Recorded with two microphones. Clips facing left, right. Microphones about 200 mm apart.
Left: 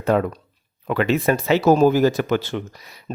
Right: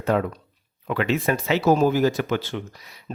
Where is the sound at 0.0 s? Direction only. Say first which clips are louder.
Left 3 dB; 45° left (ahead or behind).